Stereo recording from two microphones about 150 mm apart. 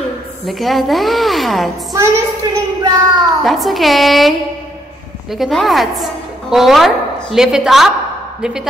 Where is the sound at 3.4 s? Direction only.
Centre (ahead or behind).